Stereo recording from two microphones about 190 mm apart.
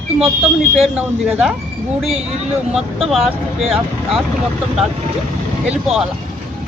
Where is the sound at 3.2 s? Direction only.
30° right (ahead or behind).